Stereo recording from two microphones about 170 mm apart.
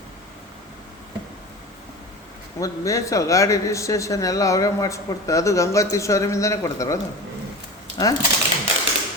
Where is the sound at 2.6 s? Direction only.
20° left (ahead or behind).